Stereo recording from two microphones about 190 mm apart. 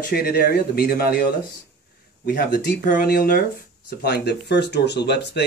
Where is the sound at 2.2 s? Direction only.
50° left (ahead or behind).